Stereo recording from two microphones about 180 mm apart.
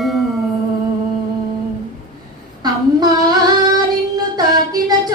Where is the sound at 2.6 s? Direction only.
20° right (ahead or behind).